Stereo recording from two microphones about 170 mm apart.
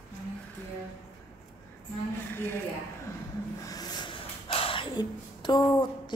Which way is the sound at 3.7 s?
25° left (ahead or behind).